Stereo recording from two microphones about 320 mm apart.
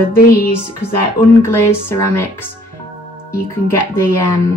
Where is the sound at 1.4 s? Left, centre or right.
Centre.